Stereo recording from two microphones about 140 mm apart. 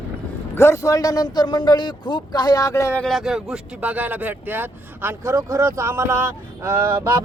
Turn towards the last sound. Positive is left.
turn(degrees=-20)  # may be behind; listen again after turning